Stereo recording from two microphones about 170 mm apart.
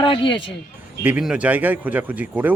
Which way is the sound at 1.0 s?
5° right (ahead or behind).